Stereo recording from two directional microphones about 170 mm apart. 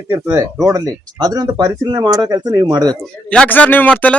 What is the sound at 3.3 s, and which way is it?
Speech, 10° left (ahead or behind).